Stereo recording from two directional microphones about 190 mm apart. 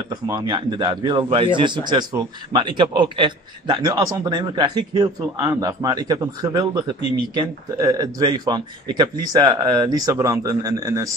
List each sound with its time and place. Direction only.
0.1 s a man's voice: 20° right (ahead or behind)